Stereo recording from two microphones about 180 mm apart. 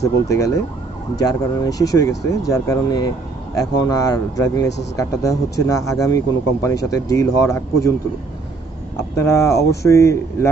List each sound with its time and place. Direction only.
1.1 s speech: 20° left (ahead or behind)
9.1 s speech: 15° left (ahead or behind)